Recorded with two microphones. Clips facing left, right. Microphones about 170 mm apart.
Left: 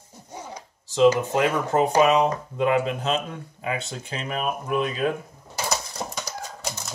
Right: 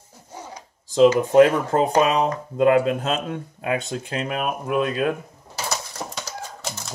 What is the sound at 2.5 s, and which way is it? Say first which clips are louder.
Speech: right 9 dB; 45° right (ahead or behind).